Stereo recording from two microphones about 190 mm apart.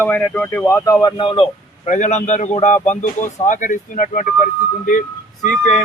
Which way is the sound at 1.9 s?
40° left (ahead or behind).